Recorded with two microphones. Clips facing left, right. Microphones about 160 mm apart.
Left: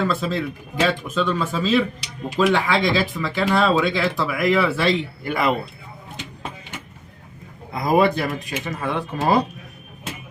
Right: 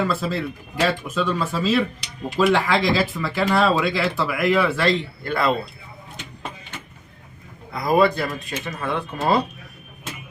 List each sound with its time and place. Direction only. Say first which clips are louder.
0.0 s speech: left 1 dB; 5° right (ahead or behind); by 5.5 s 15° left (ahead or behind)
7.7 s speech: even; 20° left (ahead or behind)